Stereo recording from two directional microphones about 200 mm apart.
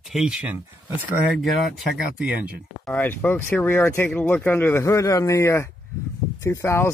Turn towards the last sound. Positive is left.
turn(degrees=15)  # may be behind; listen again after turning